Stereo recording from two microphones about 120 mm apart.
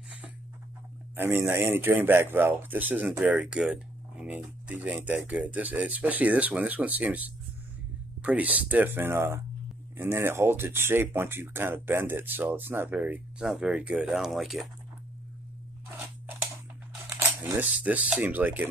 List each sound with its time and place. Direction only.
1.1 s speech: 20° right (ahead or behind); by 14.7 s centre (ahead or behind)
17.4 s speech: 15° right (ahead or behind)